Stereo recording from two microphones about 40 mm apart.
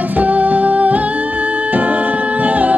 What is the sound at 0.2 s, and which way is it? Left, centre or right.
Music, right.